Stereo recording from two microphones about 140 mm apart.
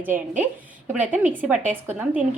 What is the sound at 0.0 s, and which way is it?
A woman's voice, 15° right (ahead or behind).